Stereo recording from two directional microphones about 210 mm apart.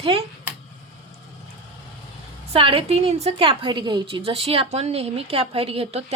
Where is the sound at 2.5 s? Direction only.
25° right (ahead or behind).